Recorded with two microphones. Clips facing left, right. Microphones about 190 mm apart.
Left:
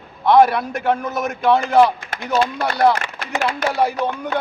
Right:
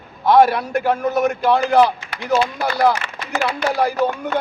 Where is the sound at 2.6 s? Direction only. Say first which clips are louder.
Left 1 dB; centre (ahead or behind).